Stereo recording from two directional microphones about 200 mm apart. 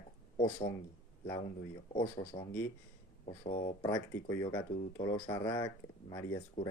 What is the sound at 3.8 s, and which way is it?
Speech, 15° left (ahead or behind).